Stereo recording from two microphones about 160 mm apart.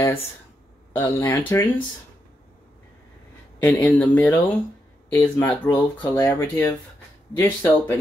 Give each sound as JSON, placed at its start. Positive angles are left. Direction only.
{"t": 0.9, "sound": "speech", "side_deg": 10}
{"t": 3.6, "sound": "speech", "side_deg": 10}
{"t": 5.9, "sound": "speech", "side_deg": 25}